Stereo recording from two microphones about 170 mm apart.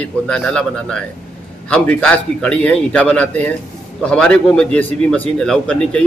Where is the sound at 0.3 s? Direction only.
5° left (ahead or behind).